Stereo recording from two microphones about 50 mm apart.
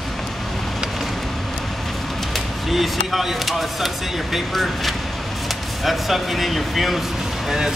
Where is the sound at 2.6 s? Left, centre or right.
Centre.